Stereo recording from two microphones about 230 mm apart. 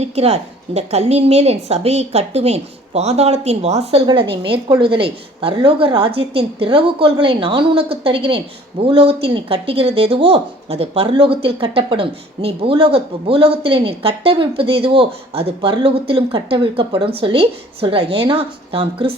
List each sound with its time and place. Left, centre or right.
0.0 s a woman's voice: right